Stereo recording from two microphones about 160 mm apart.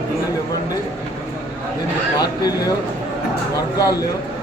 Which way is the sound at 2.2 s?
25° left (ahead or behind).